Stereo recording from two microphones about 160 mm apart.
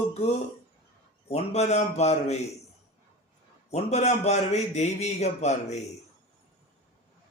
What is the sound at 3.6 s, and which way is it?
A man's voice, 45° left (ahead or behind).